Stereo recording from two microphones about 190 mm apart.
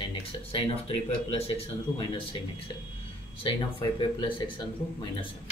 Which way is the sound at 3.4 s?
25° left (ahead or behind).